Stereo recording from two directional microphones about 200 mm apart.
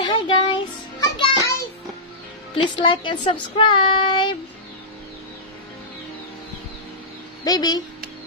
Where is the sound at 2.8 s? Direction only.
25° left (ahead or behind).